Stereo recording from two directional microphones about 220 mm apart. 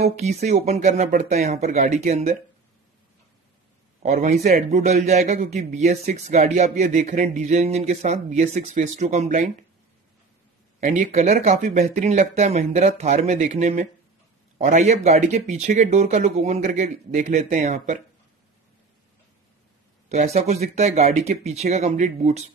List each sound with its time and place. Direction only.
0.0 s a man's voice: 30° right (ahead or behind)
4.0 s a man's voice: 30° right (ahead or behind)
10.8 s a man's voice: 35° right (ahead or behind)
20.1 s speech: 30° right (ahead or behind)